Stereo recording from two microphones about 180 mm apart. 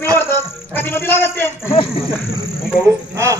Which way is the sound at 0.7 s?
10° left (ahead or behind).